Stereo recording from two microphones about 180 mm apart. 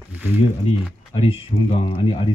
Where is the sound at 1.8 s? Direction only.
30° left (ahead or behind).